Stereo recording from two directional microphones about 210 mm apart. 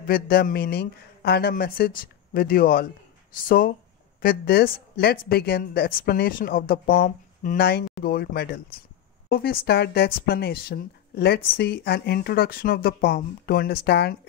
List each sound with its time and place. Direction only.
0.0 s speech: 45° left (ahead or behind)